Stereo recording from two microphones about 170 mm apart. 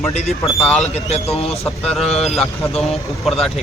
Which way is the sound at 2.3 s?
Centre (ahead or behind).